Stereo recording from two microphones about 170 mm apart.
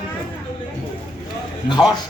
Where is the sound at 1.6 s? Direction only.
25° left (ahead or behind).